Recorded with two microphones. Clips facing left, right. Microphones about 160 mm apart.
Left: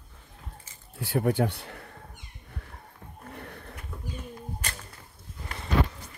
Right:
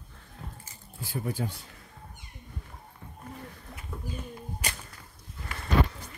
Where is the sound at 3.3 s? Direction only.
65° left (ahead or behind).